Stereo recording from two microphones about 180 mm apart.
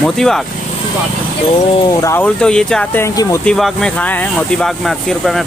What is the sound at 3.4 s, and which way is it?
Speech, centre (ahead or behind).